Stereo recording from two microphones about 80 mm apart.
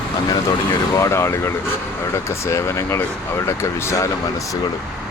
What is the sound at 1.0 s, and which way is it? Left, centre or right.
Speech, left.